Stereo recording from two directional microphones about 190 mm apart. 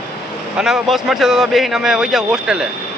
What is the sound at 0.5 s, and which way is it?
Speech, centre (ahead or behind).